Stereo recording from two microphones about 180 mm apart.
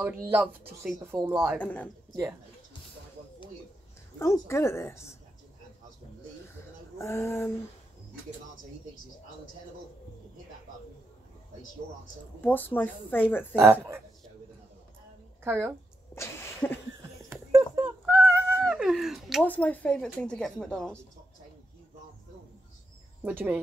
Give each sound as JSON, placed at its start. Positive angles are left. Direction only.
{"t": 0.0, "sound": "speech", "side_deg": -10}
{"t": 0.9, "sound": "speech", "side_deg": -20}
{"t": 1.3, "sound": "speech", "side_deg": 0}
{"t": 4.2, "sound": "speech", "side_deg": 15}
{"t": 7.0, "sound": "speech", "side_deg": 15}
{"t": 12.4, "sound": "speech", "side_deg": 10}
{"t": 15.4, "sound": "a woman's voice", "side_deg": -10}
{"t": 16.2, "sound": "a sound", "side_deg": 15}
{"t": 17.3, "sound": "a sound", "side_deg": -15}
{"t": 19.4, "sound": "speech", "side_deg": 10}
{"t": 23.2, "sound": "speech", "side_deg": -10}